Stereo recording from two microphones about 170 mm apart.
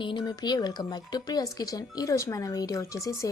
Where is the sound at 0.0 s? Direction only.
30° left (ahead or behind).